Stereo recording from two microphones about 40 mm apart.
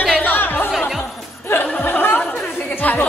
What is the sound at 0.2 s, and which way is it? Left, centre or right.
Music, left.